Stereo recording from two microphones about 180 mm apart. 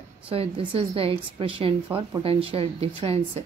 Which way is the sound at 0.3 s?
30° right (ahead or behind).